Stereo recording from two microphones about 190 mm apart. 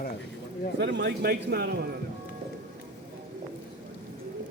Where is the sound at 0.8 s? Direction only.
65° right (ahead or behind).